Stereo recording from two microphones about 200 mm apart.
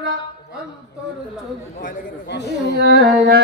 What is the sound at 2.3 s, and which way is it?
Speech, 55° left (ahead or behind).